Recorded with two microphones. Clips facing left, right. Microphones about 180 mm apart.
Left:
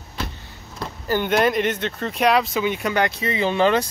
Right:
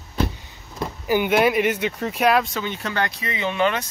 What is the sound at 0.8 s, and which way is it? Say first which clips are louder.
Speech: right 2 dB; 10° right (ahead or behind).